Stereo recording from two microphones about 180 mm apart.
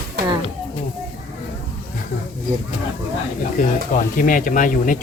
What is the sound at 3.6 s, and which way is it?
Speech, 50° left (ahead or behind).